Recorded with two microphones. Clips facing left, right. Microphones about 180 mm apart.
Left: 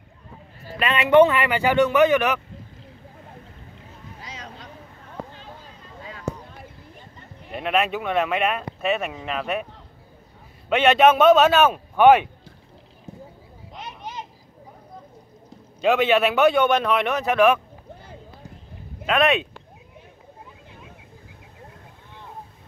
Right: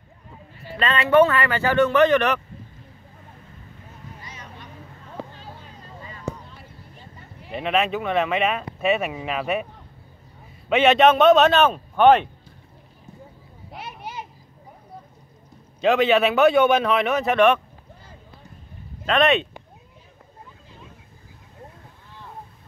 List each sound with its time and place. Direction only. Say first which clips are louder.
0.7 s speech: left 1 dB; 15° left (ahead or behind)
4.2 s vehicle: left 3 dB; 90° left
7.4 s speech: even; centre (ahead or behind)
10.7 s speech: even; centre (ahead or behind)
13.7 s children playing: even; 10° right (ahead or behind)
15.8 s speech: right 1 dB; centre (ahead or behind)
19.0 s speech: right 1 dB; centre (ahead or behind)